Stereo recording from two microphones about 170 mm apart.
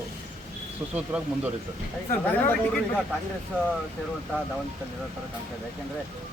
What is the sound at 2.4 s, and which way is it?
Speech, 10° left (ahead or behind).